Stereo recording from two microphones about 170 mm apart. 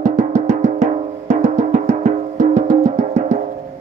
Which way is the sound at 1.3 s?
45° right (ahead or behind).